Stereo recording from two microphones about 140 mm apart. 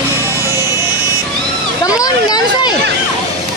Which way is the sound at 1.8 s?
25° left (ahead or behind).